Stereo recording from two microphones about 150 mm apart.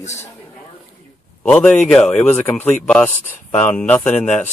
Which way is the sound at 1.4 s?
10° left (ahead or behind).